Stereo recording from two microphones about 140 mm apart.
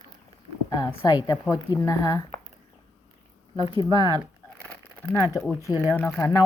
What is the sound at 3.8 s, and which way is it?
Speech, 30° right (ahead or behind).